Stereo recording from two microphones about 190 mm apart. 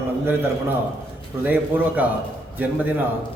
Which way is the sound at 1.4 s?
10° right (ahead or behind).